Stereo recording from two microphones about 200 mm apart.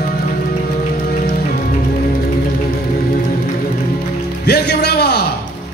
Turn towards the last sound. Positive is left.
turn(degrees=55)  # may be behind; listen again after turning